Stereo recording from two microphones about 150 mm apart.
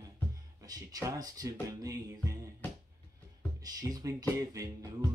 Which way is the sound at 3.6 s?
25° right (ahead or behind).